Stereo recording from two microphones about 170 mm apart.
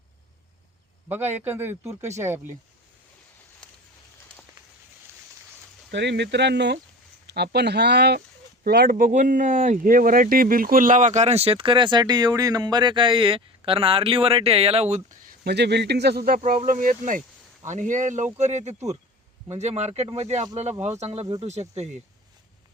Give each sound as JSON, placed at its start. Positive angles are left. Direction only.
{"t": 1.0, "sound": "speech", "side_deg": -10}
{"t": 5.9, "sound": "speech", "side_deg": -90}
{"t": 7.3, "sound": "speech", "side_deg": -75}
{"t": 8.6, "sound": "speech", "side_deg": -60}
{"t": 15.3, "sound": "speech", "side_deg": -80}
{"t": 16.4, "sound": "speech", "side_deg": -50}